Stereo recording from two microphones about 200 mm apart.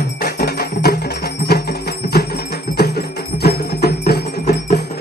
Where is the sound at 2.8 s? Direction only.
55° left (ahead or behind).